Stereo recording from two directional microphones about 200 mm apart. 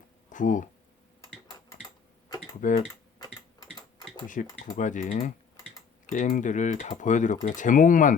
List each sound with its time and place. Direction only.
0.3 s speech: 40° left (ahead or behind)
2.6 s speech: 40° left (ahead or behind)
4.4 s speech: 40° left (ahead or behind)